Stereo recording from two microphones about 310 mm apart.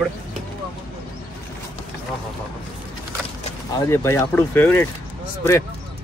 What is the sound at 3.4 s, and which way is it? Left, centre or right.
Speech, centre.